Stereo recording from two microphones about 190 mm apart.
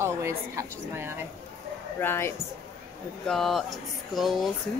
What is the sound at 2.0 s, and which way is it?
Speech, 10° left (ahead or behind).